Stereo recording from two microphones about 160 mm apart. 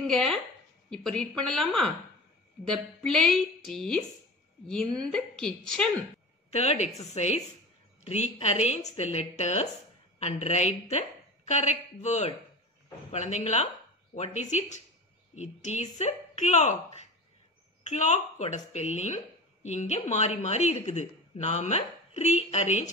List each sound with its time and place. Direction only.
0.0 s a woman's voice: centre (ahead or behind)
6.5 s a woman's voice: 40° left (ahead or behind)